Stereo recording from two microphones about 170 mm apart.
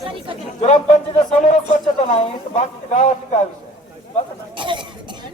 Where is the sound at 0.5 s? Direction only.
40° left (ahead or behind).